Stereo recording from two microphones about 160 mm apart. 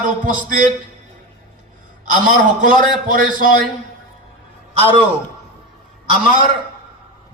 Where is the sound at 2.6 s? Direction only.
55° right (ahead or behind).